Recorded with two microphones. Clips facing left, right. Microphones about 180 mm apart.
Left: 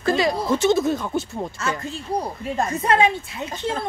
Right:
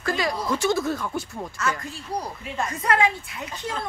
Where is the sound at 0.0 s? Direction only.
25° left (ahead or behind).